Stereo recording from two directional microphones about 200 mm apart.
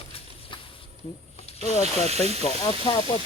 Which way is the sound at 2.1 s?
30° right (ahead or behind).